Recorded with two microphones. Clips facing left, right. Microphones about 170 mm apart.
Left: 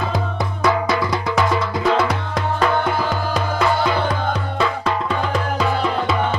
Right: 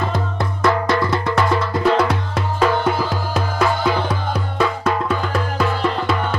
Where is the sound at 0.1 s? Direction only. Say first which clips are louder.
Even; centre (ahead or behind).